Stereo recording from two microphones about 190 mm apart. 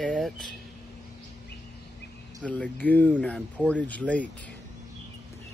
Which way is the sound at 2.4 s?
5° left (ahead or behind).